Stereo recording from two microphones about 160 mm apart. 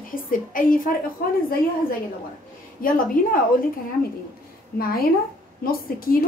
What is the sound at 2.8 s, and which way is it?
Speech, 60° left (ahead or behind).